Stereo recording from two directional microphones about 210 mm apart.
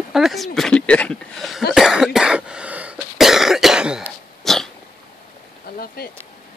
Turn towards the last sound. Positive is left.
turn(degrees=50)  # may be behind; listen again after turning